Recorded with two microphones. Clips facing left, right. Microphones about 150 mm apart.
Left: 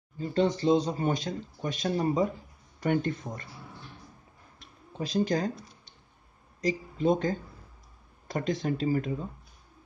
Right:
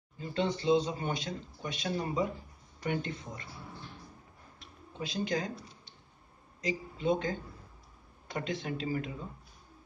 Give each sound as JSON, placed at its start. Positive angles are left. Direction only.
{"t": 0.3, "sound": "a man's voice", "side_deg": 40}
{"t": 4.6, "sound": "a sound", "side_deg": 40}
{"t": 6.6, "sound": "a man's voice", "side_deg": 40}